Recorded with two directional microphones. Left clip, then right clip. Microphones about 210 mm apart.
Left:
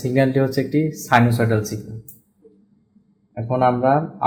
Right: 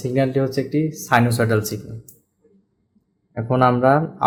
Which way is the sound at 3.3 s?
25° right (ahead or behind).